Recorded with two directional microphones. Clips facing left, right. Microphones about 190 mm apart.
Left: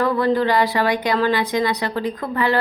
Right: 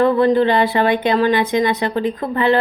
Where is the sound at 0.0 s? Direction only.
25° right (ahead or behind).